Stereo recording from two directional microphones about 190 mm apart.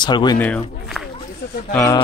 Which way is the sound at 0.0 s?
20° left (ahead or behind).